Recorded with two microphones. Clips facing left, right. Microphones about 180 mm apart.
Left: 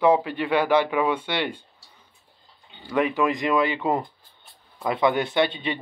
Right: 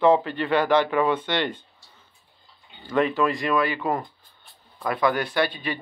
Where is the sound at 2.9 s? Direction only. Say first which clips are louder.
Even; 15° left (ahead or behind).